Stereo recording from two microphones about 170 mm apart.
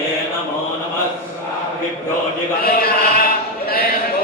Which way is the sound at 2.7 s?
65° left (ahead or behind).